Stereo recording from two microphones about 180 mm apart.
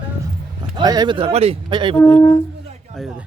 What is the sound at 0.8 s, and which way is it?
Speech, 20° right (ahead or behind).